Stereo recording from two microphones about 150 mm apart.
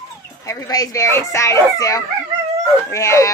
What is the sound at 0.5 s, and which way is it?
Speech, 25° left (ahead or behind).